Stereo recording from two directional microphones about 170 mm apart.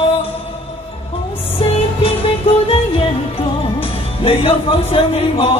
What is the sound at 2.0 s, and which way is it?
Music, 30° left (ahead or behind).